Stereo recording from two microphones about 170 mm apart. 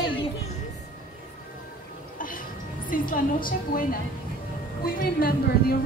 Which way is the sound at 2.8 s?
55° left (ahead or behind).